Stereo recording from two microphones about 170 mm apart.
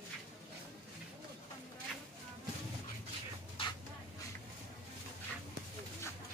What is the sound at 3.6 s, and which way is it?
Vehicle, 30° left (ahead or behind).